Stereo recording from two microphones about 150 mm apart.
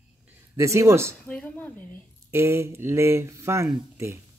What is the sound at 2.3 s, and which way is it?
Speech, 15° right (ahead or behind).